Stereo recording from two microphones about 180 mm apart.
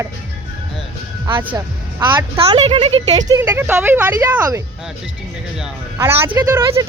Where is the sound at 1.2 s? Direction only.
10° right (ahead or behind).